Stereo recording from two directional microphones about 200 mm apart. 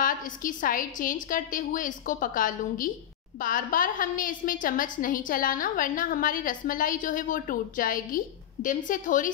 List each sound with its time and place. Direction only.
0.0 s a woman's voice: 40° left (ahead or behind)